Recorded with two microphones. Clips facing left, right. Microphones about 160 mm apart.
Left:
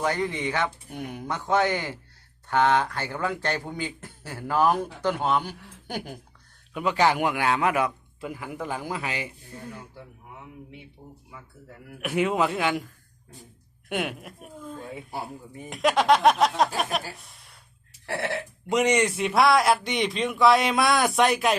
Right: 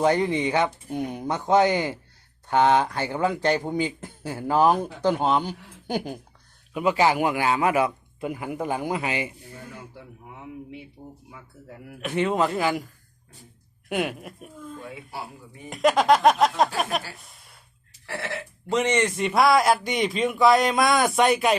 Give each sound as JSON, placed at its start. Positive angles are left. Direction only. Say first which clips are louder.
{"t": 0.0, "sound": "a man's voice", "louder": "right 5 dB", "side_deg": -20}
{"t": 3.8, "sound": "a man's voice", "louder": "right 5 dB", "side_deg": -15}
{"t": 5.0, "sound": "speech", "louder": "right 3 dB", "side_deg": -30}
{"t": 6.7, "sound": "a man's voice", "louder": "right 2 dB", "side_deg": -5}
{"t": 11.9, "sound": "a man's voice", "louder": "right 1 dB", "side_deg": 10}
{"t": 13.9, "sound": "a man's voice", "louder": "right 3 dB", "side_deg": 0}
{"t": 15.7, "sound": "a man's voice", "louder": "right 2 dB", "side_deg": 0}
{"t": 17.2, "sound": "a sound", "louder": "even", "side_deg": 0}
{"t": 18.0, "sound": "a sound", "louder": "left 4 dB", "side_deg": 60}
{"t": 18.7, "sound": "a man's voice", "louder": "left 1 dB", "side_deg": 10}